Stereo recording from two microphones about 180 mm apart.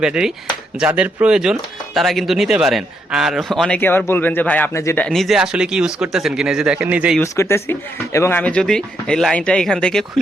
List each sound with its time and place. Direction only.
0.0 s a man's voice: 5° right (ahead or behind)
7.2 s a man's voice: 15° left (ahead or behind)